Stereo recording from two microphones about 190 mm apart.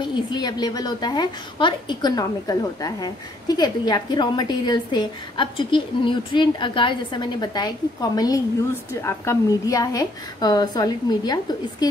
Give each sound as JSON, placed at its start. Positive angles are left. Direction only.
{"t": 0.0, "sound": "a woman's voice", "side_deg": 20}